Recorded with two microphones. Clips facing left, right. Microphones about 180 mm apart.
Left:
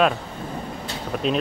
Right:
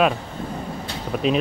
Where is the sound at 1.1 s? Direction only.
5° right (ahead or behind).